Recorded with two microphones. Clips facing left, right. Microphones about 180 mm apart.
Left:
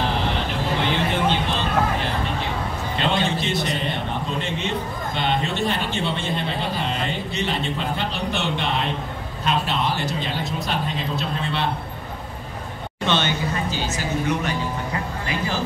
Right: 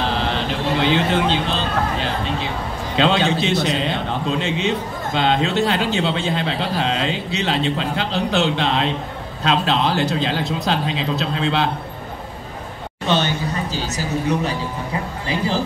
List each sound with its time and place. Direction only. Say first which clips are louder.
0.8 s speech: right 4 dB; 90° right
3.0 s a man's voice: right 6 dB; 90° right
13.0 s speech: right 2 dB; 40° right (ahead or behind)